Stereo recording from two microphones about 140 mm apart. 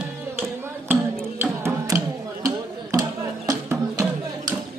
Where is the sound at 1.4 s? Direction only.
20° right (ahead or behind).